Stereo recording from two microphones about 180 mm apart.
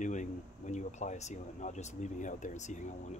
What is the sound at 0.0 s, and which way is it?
Speech, 45° left (ahead or behind).